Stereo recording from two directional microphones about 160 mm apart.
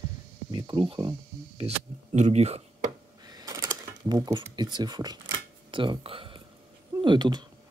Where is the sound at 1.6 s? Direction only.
45° right (ahead or behind).